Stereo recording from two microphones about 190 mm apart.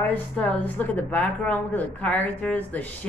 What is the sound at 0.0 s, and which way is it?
Speech, 10° left (ahead or behind).